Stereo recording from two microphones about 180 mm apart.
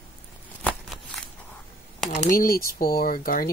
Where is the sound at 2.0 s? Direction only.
45° left (ahead or behind).